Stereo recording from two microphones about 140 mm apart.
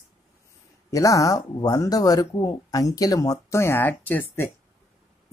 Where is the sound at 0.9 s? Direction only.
25° left (ahead or behind).